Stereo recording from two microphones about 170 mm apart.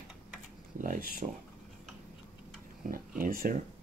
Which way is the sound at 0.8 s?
55° right (ahead or behind).